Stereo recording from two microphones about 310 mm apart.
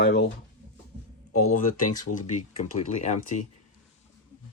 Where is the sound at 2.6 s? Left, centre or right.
Left.